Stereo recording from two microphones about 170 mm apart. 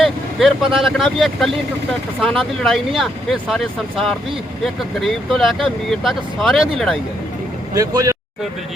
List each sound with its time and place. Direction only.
0.0 s speech: centre (ahead or behind)
7.7 s speech: 20° right (ahead or behind)